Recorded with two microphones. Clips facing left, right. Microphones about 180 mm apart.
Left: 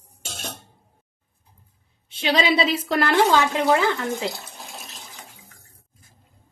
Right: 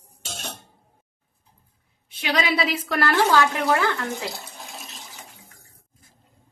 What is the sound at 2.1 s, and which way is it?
Speech, 25° left (ahead or behind).